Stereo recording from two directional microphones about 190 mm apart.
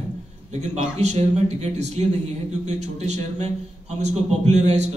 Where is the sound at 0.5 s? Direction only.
35° right (ahead or behind).